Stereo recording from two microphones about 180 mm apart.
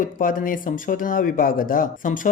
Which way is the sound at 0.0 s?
50° left (ahead or behind).